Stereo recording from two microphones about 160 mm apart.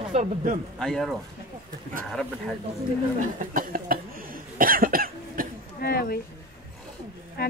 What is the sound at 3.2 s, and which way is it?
Speech, 55° right (ahead or behind).